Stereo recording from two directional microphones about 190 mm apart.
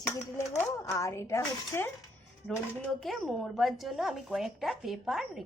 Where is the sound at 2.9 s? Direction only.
Centre (ahead or behind).